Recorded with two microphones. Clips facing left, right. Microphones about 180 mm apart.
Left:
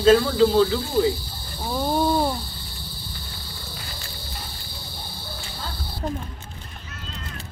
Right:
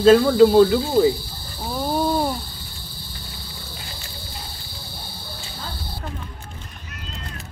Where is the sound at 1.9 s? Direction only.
10° right (ahead or behind).